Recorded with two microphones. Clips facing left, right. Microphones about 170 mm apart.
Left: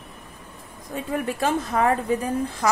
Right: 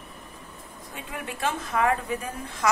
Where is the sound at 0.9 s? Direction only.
40° left (ahead or behind).